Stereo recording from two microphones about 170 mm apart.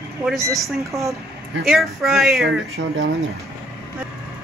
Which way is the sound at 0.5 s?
Centre (ahead or behind).